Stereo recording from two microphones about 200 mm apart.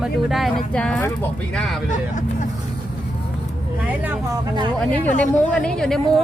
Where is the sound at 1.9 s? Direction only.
40° left (ahead or behind).